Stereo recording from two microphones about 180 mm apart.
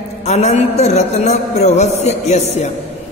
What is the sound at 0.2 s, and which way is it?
A man's voice, 35° left (ahead or behind).